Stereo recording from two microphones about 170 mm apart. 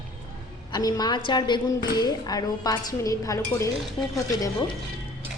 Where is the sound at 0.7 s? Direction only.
20° left (ahead or behind).